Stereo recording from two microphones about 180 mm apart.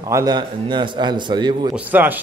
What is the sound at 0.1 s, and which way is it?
A man's voice, 20° right (ahead or behind).